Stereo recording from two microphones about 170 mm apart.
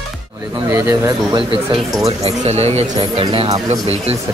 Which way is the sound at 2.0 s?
35° right (ahead or behind).